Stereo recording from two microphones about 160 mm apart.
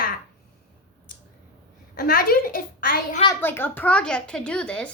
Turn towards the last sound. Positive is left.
turn(degrees=5)  # may be behind; listen again after turning